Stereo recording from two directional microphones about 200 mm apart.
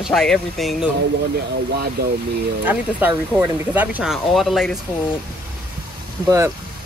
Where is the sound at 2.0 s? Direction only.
50° right (ahead or behind).